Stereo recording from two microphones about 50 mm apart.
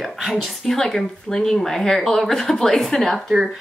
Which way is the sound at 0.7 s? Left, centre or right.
Centre.